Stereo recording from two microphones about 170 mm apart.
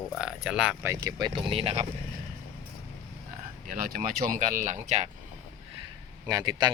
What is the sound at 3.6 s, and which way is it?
Speech, 55° right (ahead or behind).